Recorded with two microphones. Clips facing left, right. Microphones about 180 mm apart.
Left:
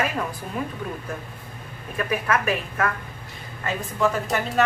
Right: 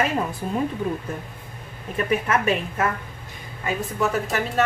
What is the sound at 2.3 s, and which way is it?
Speech, 25° right (ahead or behind).